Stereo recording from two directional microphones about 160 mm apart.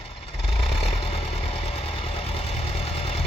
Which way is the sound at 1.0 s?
35° left (ahead or behind).